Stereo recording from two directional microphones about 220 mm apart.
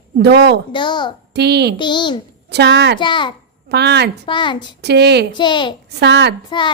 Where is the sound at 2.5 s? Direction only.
50° right (ahead or behind).